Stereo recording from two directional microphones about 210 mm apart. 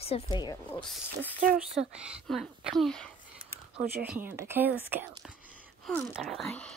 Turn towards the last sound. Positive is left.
turn(degrees=5)  # may be behind; listen again after turning